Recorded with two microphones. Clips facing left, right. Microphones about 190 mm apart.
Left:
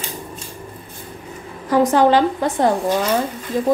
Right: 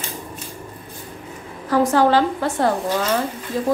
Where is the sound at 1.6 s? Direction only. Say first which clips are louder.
Left 2 dB; 20° left (ahead or behind).